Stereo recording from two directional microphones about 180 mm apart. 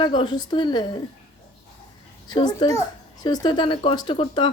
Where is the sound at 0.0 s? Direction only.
25° left (ahead or behind).